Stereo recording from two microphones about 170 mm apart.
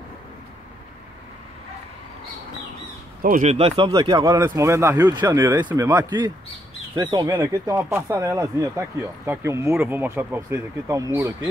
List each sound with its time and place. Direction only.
3.2 s speech: 55° right (ahead or behind)
3.5 s speech: 35° right (ahead or behind); by 11.3 s 15° right (ahead or behind)